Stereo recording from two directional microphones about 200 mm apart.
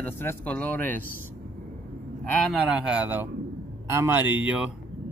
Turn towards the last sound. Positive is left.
turn(degrees=-5)  # may be behind; listen again after turning